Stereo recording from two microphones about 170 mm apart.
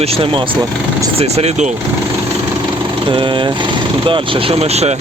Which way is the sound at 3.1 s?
30° right (ahead or behind).